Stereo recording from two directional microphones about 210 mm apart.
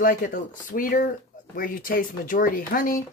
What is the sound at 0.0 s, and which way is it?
Speech, 40° left (ahead or behind).